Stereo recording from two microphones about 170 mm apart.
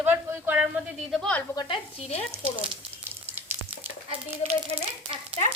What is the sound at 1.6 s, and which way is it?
Speech, 30° left (ahead or behind).